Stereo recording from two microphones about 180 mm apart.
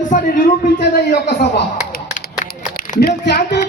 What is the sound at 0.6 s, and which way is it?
A man's voice, 60° left (ahead or behind).